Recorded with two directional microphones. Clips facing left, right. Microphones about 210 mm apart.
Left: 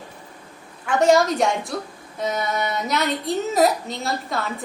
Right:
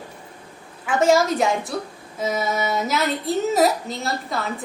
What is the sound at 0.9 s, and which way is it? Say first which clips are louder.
A woman's voice: left 1 dB; centre (ahead or behind).